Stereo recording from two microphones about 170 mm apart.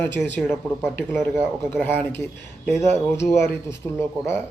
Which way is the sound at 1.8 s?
10° left (ahead or behind).